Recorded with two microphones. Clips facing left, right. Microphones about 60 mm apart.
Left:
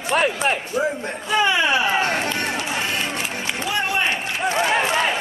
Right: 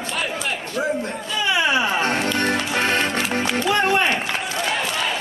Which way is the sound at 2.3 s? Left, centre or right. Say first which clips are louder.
Right 3 dB; right.